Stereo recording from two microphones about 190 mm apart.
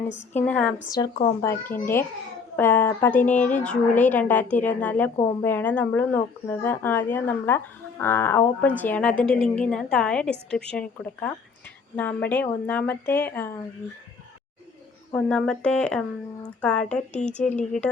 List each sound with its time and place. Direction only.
0.4 s speech: 10° left (ahead or behind)
0.9 s speech: 20° left (ahead or behind)
5.1 s speech: 25° left (ahead or behind)
5.4 s speech: 10° left (ahead or behind)
15.1 s speech: 5° left (ahead or behind)
17.4 s speech: 40° left (ahead or behind)